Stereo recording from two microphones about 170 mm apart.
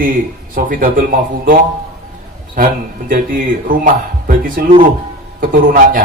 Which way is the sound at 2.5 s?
55° right (ahead or behind).